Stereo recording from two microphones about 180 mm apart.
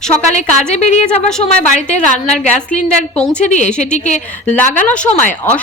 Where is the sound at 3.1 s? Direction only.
5° left (ahead or behind).